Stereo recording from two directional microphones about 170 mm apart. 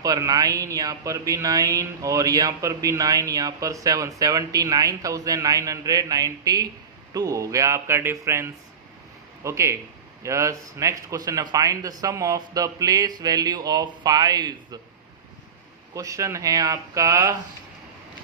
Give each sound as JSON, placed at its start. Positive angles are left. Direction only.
{"t": 0.0, "sound": "speech", "side_deg": -20}
{"t": 15.9, "sound": "speech", "side_deg": -20}